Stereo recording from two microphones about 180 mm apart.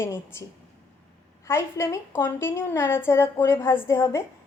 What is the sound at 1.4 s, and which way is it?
A woman's voice, 15° left (ahead or behind).